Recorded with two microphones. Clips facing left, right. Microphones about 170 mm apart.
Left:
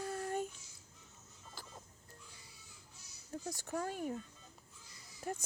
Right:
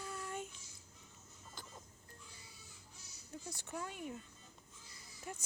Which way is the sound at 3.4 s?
40° left (ahead or behind).